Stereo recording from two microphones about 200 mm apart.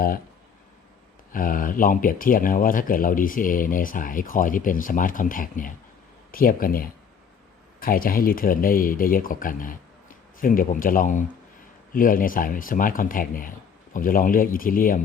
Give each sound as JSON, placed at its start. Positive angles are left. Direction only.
{"t": 1.3, "sound": "speech", "side_deg": 45}